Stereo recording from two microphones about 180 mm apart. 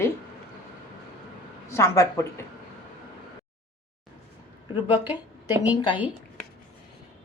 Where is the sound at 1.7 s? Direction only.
15° left (ahead or behind).